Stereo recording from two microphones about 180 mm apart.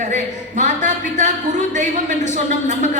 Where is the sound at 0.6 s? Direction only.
40° right (ahead or behind).